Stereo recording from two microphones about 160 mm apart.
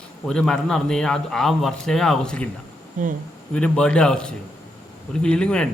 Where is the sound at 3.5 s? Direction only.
5° left (ahead or behind).